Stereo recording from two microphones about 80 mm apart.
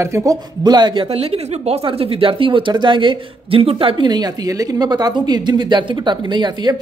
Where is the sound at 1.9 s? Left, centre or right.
Right.